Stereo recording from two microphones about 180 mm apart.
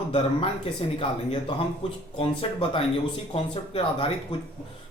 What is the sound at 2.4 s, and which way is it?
Speech, 30° left (ahead or behind).